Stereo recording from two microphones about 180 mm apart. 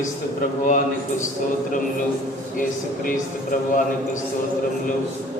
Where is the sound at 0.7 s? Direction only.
45° left (ahead or behind).